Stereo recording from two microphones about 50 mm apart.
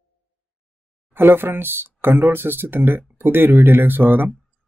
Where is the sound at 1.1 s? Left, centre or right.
Right.